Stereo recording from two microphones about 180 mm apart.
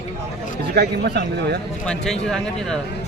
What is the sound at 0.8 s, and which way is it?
Speech, 65° right (ahead or behind).